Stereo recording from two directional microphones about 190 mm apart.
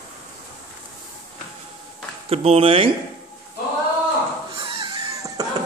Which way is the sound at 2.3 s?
30° right (ahead or behind).